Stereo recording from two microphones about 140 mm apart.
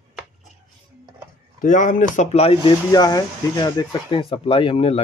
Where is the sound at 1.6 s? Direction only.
70° left (ahead or behind); by 2.5 s 50° left (ahead or behind).